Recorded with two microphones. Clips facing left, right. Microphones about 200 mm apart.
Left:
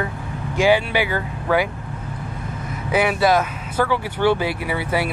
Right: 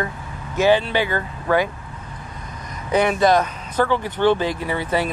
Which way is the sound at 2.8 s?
5° left (ahead or behind).